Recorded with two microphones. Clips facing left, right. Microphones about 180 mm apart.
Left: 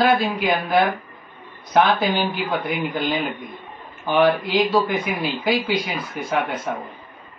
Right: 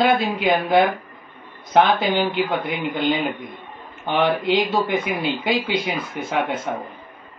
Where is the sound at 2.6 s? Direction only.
25° right (ahead or behind).